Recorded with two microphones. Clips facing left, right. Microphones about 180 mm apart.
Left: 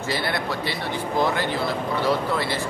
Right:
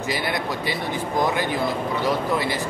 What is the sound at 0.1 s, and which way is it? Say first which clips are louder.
Speech: even; 15° right (ahead or behind).